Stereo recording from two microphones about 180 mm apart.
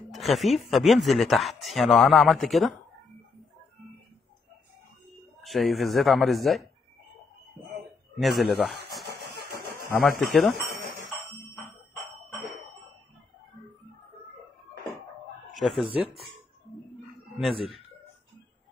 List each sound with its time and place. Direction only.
0.1 s speech: centre (ahead or behind)
5.4 s speech: centre (ahead or behind)
8.2 s speech: centre (ahead or behind)
9.0 s vehicle: 60° right (ahead or behind)
10.0 s speech: 5° left (ahead or behind)
15.6 s speech: centre (ahead or behind)